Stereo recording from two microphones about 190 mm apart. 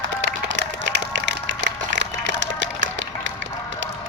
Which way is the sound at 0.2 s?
75° right (ahead or behind).